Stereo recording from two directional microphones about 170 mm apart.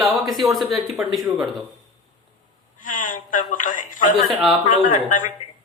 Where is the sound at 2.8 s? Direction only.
50° left (ahead or behind).